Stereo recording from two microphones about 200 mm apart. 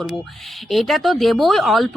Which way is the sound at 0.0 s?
Centre (ahead or behind).